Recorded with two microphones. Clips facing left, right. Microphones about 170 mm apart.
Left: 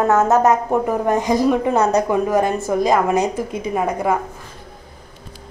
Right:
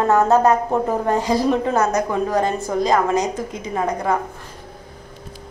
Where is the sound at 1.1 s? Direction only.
15° left (ahead or behind).